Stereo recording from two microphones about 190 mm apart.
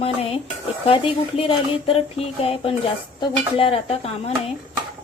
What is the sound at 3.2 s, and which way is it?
Speech, 30° left (ahead or behind).